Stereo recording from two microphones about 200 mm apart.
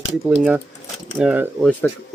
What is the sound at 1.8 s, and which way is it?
Speech, 10° left (ahead or behind).